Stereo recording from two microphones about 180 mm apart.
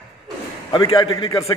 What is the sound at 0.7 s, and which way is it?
Speech, 30° left (ahead or behind).